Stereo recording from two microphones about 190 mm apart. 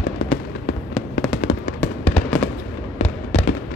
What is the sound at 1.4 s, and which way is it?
Fireworks, 30° left (ahead or behind).